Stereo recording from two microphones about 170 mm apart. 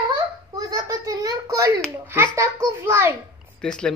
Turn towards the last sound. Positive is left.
turn(degrees=5)  # may be behind; listen again after turning